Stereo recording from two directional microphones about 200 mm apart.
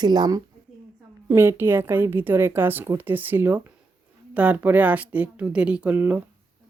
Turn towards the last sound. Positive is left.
turn(degrees=-10)  # may be behind; listen again after turning